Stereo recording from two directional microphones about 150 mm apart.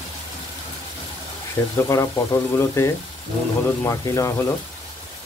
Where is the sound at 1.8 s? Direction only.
20° left (ahead or behind).